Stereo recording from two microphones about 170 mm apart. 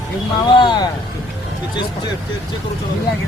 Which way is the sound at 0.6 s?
25° left (ahead or behind).